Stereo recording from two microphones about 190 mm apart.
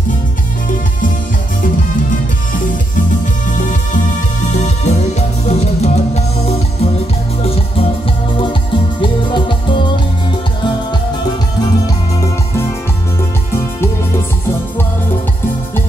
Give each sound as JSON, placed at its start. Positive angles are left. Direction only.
{"t": 4.6, "sound": "music", "side_deg": 35}
{"t": 9.0, "sound": "music", "side_deg": 25}